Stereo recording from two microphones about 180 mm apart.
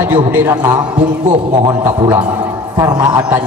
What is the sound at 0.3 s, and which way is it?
A man's voice, 20° right (ahead or behind).